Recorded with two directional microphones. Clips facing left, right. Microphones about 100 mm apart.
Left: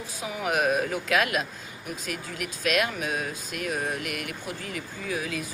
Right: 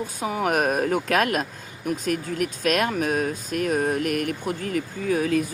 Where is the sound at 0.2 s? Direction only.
45° right (ahead or behind).